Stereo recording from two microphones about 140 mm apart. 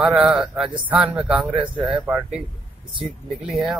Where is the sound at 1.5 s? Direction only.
35° right (ahead or behind).